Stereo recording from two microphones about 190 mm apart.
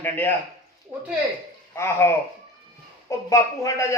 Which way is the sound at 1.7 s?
15° left (ahead or behind).